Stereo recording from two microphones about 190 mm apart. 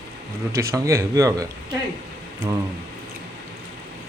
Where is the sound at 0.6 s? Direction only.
15° right (ahead or behind).